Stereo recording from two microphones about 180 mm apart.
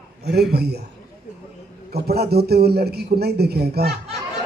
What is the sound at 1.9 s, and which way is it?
A man's voice, 60° right (ahead or behind).